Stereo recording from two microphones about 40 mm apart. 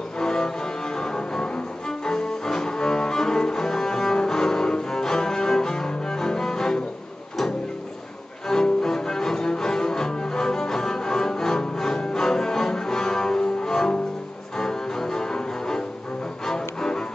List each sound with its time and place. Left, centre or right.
0.2 s cello: centre
8.5 s cello: centre
16.4 s music: centre